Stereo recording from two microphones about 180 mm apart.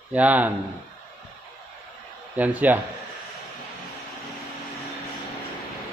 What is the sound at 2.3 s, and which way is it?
Speech, 10° right (ahead or behind).